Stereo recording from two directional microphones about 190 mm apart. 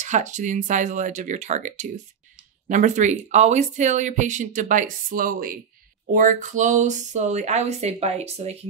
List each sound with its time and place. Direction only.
0.0 s speech: 40° right (ahead or behind)